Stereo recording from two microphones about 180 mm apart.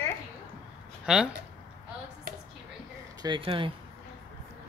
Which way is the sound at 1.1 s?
5° right (ahead or behind).